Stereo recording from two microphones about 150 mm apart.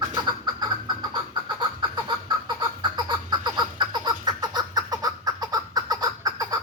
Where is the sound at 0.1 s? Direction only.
30° right (ahead or behind).